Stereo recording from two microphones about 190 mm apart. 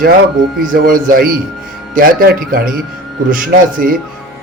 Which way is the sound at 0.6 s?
45° right (ahead or behind).